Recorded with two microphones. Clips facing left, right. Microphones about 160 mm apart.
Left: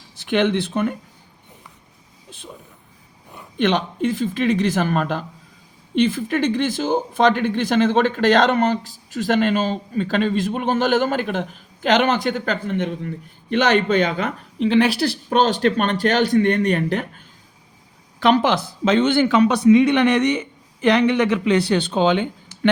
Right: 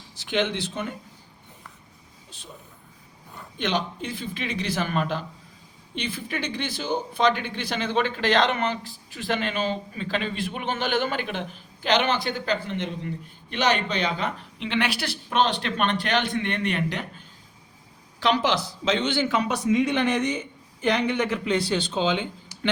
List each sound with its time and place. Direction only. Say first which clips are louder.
0.2 s speech: left 7 dB; 55° left (ahead or behind)
3.6 s a woman's voice: left 8 dB; 55° left (ahead or behind)
18.2 s a man's voice: left 6 dB; 55° left (ahead or behind)